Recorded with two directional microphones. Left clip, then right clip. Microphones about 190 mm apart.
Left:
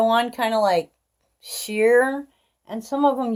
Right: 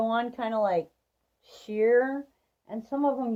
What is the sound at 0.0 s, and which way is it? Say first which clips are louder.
A woman's voice: left 9 dB; 15° left (ahead or behind).